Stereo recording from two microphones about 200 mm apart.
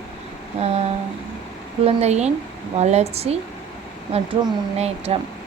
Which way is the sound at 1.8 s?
35° right (ahead or behind).